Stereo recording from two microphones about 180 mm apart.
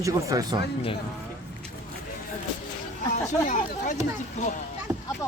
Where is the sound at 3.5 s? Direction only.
45° left (ahead or behind).